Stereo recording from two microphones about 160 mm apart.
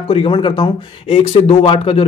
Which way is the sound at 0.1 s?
35° left (ahead or behind).